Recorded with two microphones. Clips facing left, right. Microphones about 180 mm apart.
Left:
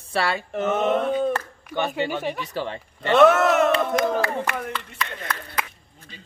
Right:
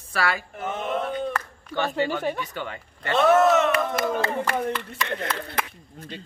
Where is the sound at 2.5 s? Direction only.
30° left (ahead or behind).